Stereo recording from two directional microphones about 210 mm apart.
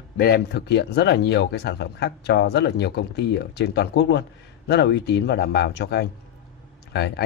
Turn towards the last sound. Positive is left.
turn(degrees=50)  # may be behind; listen again after turning